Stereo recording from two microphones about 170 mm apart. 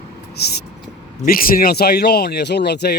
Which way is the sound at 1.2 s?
55° left (ahead or behind).